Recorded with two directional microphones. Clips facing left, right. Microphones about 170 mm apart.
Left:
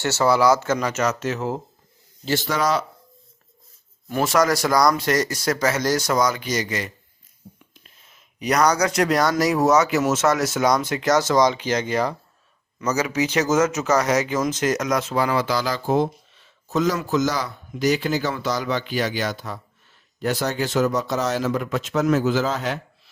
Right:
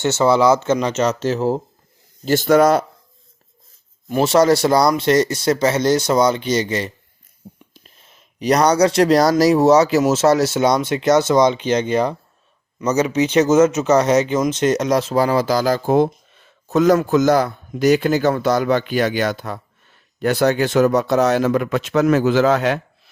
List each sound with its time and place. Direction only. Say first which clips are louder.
0.0 s speech: right 4 dB; 20° right (ahead or behind)
2.2 s speech: right 9 dB; 45° right (ahead or behind)
4.1 s speech: right 6 dB; 30° right (ahead or behind)
7.4 s a sound: right 5 dB; 60° right (ahead or behind)
8.4 s speech: right 5 dB; 30° right (ahead or behind); by 22.8 s 70° right (ahead or behind)